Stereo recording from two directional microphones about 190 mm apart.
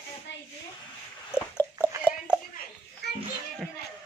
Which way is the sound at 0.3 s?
70° left (ahead or behind).